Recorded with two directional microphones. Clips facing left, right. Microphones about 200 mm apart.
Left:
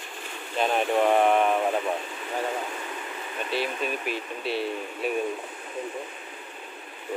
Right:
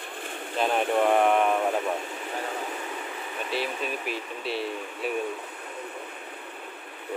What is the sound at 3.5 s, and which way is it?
Speech, centre (ahead or behind).